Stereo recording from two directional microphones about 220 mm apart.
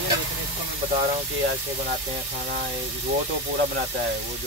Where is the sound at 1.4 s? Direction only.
40° right (ahead or behind).